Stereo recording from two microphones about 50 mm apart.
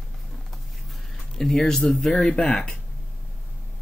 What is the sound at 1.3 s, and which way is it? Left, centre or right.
Speech, centre.